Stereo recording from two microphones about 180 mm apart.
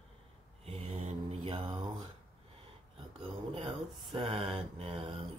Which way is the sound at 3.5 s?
30° right (ahead or behind).